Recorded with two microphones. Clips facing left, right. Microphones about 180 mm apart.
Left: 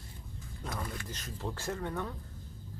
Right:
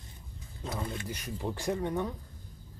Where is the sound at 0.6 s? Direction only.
25° right (ahead or behind).